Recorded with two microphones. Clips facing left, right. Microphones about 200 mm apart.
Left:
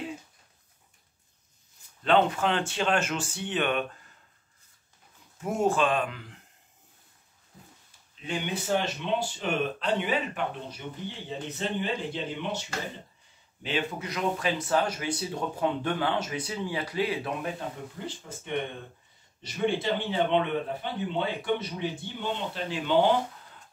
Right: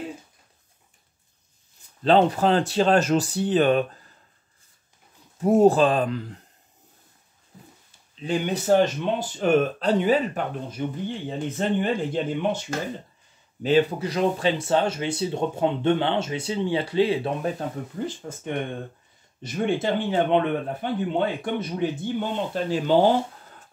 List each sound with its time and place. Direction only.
2.0 s speech: 35° right (ahead or behind)
5.4 s speech: 35° right (ahead or behind)
8.3 s speech: 40° right (ahead or behind)
10.8 s speech: 50° right (ahead or behind); by 17.5 s 30° right (ahead or behind)
17.9 s speech: 45° right (ahead or behind)